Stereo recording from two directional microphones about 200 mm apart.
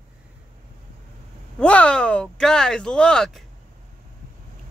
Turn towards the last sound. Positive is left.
turn(degrees=5)  # may be behind; listen again after turning